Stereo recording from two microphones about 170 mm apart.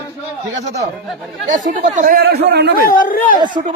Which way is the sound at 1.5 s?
50° right (ahead or behind).